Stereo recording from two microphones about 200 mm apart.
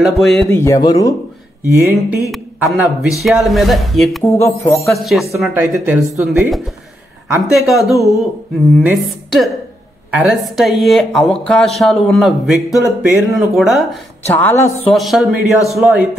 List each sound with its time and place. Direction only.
0.0 s speech: centre (ahead or behind)
0.5 s speech: 15° left (ahead or behind)
1.8 s a man's voice: 10° right (ahead or behind)
4.2 s speech: 15° left (ahead or behind)
4.7 s speech: centre (ahead or behind)
14.3 s speech: 10° left (ahead or behind)
14.9 s speech: centre (ahead or behind)